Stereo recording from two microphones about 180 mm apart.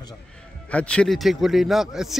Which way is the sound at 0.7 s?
5° left (ahead or behind).